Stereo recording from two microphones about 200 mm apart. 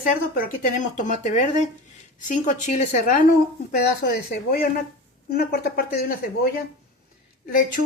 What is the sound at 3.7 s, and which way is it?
Speech, 55° left (ahead or behind).